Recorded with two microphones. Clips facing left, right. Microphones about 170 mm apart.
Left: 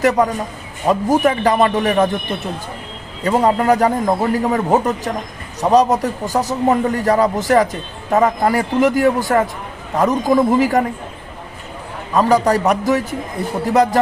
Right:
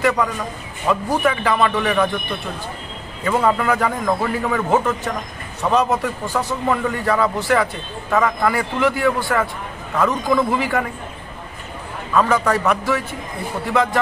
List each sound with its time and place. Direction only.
0.0 s a man's voice: 40° left (ahead or behind)
3.3 s a man's voice: 35° left (ahead or behind)
12.1 s a man's voice: 35° left (ahead or behind)